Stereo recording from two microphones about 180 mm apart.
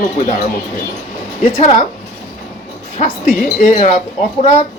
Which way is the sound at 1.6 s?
40° left (ahead or behind).